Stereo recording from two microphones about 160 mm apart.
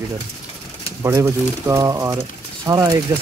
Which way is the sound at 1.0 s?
15° right (ahead or behind).